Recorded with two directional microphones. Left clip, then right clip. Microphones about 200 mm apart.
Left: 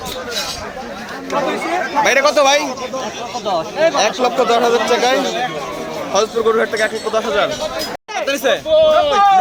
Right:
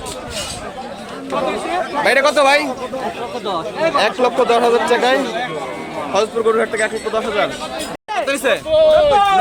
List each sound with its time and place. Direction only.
2.0 s speech: centre (ahead or behind)
3.4 s speech: 15° left (ahead or behind)
3.9 s speech: 10° right (ahead or behind)